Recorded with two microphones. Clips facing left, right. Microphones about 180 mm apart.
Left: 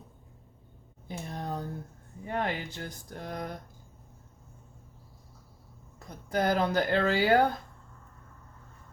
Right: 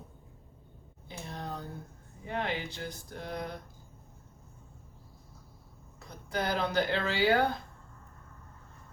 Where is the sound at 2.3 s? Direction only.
45° left (ahead or behind).